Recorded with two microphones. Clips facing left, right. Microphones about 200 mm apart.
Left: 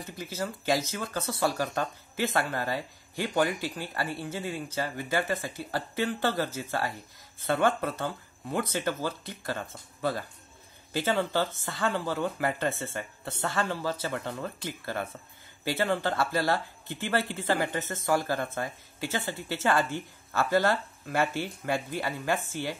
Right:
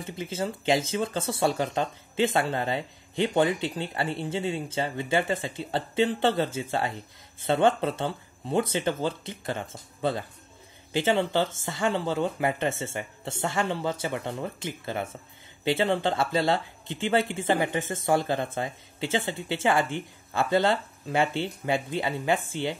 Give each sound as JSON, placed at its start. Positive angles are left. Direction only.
{"t": 0.0, "sound": "speech", "side_deg": -25}
{"t": 11.6, "sound": "speech", "side_deg": -20}